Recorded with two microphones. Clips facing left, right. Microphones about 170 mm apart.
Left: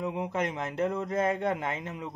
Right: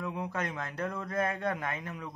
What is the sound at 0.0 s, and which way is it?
Speech, 20° left (ahead or behind).